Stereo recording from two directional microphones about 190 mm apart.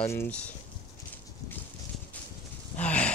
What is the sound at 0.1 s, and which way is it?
Speech, 10° left (ahead or behind).